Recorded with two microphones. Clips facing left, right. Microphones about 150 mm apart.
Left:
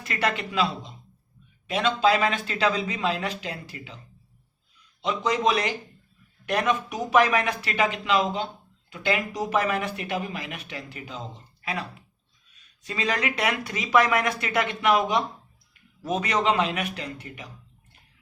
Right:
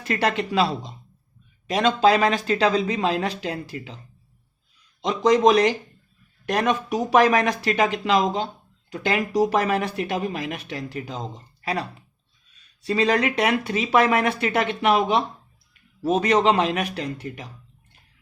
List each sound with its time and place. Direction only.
0.1 s speech: 35° right (ahead or behind)
5.0 s speech: 40° right (ahead or behind)